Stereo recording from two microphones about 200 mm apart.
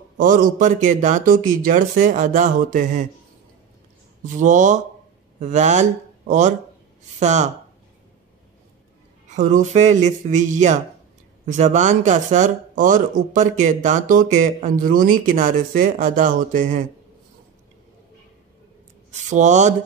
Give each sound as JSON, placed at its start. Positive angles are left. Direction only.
{"t": 0.2, "sound": "speech", "side_deg": -45}
{"t": 4.2, "sound": "speech", "side_deg": -40}
{"t": 9.3, "sound": "speech", "side_deg": -40}
{"t": 19.0, "sound": "speech", "side_deg": -35}